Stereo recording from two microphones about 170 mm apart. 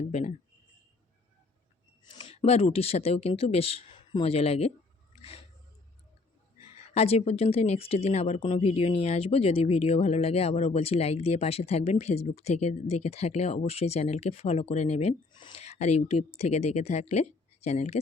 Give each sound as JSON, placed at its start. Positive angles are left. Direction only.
{"t": 0.0, "sound": "speech", "side_deg": 45}
{"t": 2.0, "sound": "speech", "side_deg": 35}
{"t": 6.6, "sound": "speech", "side_deg": 35}